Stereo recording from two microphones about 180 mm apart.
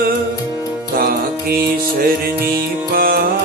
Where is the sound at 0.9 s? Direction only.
60° right (ahead or behind).